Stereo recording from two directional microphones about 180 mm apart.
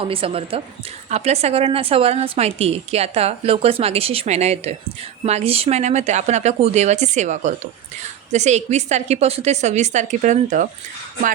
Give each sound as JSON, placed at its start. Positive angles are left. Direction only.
{"t": 0.0, "sound": "a woman's voice", "side_deg": -30}